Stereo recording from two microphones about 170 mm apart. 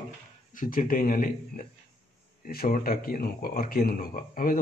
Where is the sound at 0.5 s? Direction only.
55° left (ahead or behind).